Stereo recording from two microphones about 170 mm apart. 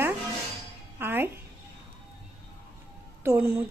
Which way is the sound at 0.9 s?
10° right (ahead or behind).